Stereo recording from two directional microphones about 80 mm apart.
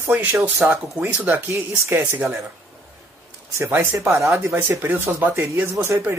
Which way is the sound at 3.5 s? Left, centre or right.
Right.